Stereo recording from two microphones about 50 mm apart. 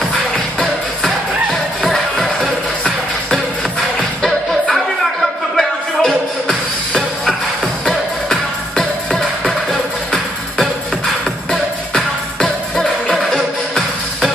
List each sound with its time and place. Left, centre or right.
1.8 s music: centre